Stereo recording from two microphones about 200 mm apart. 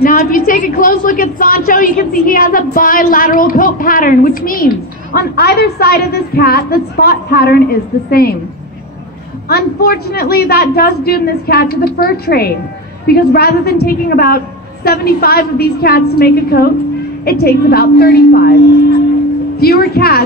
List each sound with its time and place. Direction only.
0.0 s a woman's voice: 45° left (ahead or behind)
9.5 s a woman's voice: 50° left (ahead or behind)
19.6 s a woman's voice: 50° left (ahead or behind)